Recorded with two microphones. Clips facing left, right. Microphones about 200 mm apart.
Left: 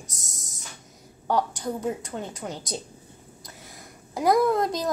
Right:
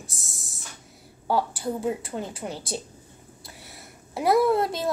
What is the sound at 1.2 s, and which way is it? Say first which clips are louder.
A woman's voice: even; 5° right (ahead or behind).